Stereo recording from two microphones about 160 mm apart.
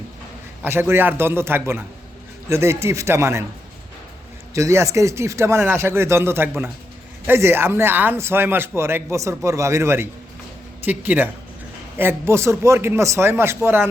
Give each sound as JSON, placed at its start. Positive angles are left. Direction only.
{"t": 0.6, "sound": "speech", "side_deg": -15}
{"t": 4.5, "sound": "speech", "side_deg": -20}